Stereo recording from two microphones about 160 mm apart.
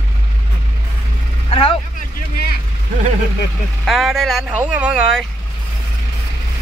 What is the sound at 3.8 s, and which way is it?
Speech, centre (ahead or behind).